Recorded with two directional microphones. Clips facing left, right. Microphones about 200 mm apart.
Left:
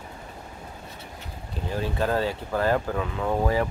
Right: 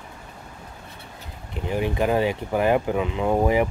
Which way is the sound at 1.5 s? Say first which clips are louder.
Right 4 dB; 15° right (ahead or behind).